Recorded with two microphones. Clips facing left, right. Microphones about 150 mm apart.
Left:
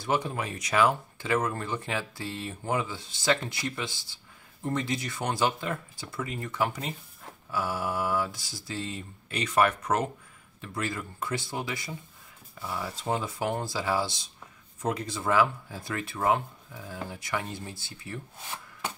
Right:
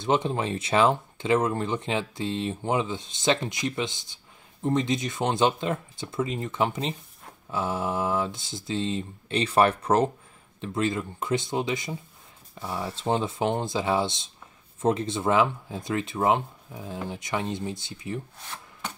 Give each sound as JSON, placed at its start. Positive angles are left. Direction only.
{"t": 0.0, "sound": "speech", "side_deg": -25}